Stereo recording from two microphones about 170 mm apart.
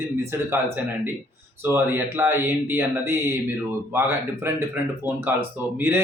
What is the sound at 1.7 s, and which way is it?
Speech, 15° right (ahead or behind).